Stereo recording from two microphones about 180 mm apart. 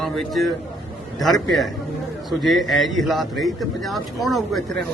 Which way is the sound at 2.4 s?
Centre (ahead or behind).